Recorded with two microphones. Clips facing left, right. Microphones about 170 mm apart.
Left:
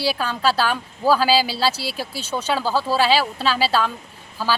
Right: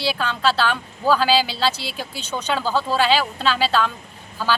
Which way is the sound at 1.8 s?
35° left (ahead or behind).